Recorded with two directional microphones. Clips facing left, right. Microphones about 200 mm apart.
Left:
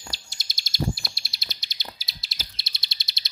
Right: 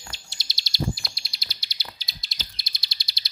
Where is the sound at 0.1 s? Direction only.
45° left (ahead or behind).